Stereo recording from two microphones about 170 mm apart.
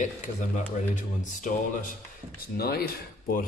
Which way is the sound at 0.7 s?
45° left (ahead or behind).